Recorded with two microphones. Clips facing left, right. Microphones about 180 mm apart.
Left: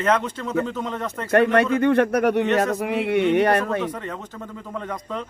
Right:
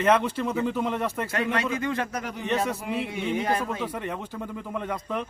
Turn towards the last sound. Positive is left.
turn(degrees=-10)  # may be behind; listen again after turning